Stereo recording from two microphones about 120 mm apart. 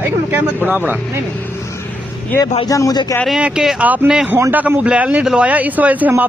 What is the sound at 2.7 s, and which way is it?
Speech, 30° left (ahead or behind).